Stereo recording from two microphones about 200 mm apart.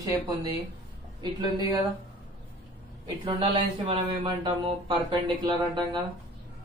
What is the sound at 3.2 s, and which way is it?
Speech, 30° right (ahead or behind).